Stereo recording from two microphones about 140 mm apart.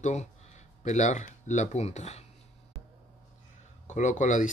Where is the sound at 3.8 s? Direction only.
60° left (ahead or behind).